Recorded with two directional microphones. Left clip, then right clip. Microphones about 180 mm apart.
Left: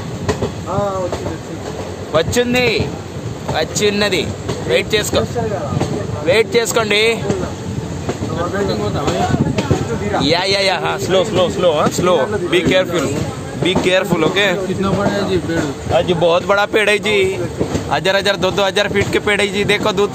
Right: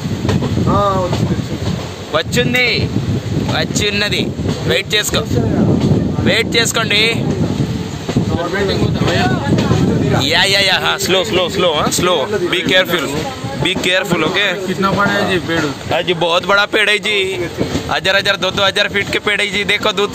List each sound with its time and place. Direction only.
2.3 s speech: 20° left (ahead or behind)
3.5 s speech: 10° left (ahead or behind)
6.2 s speech: 5° left (ahead or behind)
10.1 s speech: centre (ahead or behind)
11.1 s speech: 20° right (ahead or behind)
12.0 s speech: centre (ahead or behind)
16.0 s speech: 15° right (ahead or behind)
16.3 s speech: 5° left (ahead or behind)